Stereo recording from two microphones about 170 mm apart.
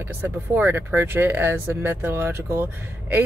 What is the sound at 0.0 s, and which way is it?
Speech, 15° right (ahead or behind).